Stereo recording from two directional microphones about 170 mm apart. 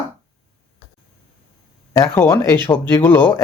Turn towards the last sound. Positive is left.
turn(degrees=15)  # may be behind; listen again after turning